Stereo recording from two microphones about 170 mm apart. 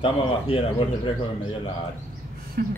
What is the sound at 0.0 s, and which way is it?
A man's voice, 35° left (ahead or behind).